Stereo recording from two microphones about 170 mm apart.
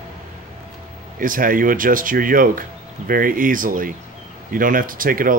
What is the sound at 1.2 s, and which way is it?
Speech, 55° right (ahead or behind).